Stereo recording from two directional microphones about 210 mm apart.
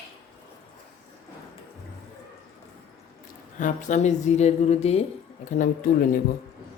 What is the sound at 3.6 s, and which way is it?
A woman's voice, 35° left (ahead or behind).